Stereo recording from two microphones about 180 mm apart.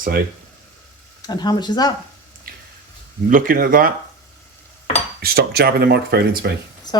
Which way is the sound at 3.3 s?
50° right (ahead or behind).